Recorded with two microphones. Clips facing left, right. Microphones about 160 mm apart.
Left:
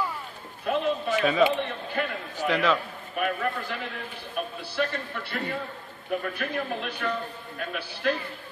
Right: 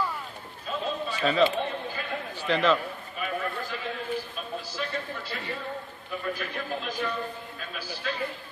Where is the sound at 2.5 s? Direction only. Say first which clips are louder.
Right 1 dB; 10° left (ahead or behind).